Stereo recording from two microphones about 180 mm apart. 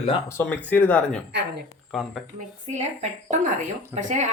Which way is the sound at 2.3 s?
40° right (ahead or behind).